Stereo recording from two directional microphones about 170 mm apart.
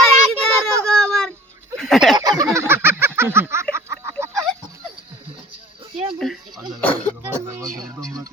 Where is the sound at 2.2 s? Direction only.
20° right (ahead or behind).